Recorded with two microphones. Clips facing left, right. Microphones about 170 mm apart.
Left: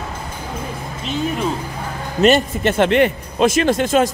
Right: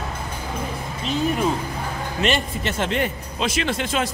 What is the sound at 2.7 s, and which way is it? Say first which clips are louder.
Speech: left 10 dB; 65° left (ahead or behind).